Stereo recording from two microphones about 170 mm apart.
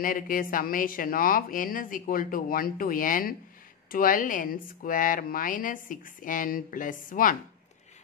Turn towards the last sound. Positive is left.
turn(degrees=55)  # may be behind; listen again after turning